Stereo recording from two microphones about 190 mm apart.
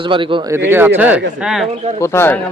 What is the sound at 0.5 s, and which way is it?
Speech, 10° right (ahead or behind).